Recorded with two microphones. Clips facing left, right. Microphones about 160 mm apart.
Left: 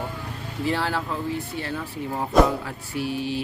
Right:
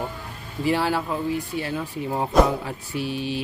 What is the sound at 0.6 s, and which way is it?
Speech, 10° right (ahead or behind).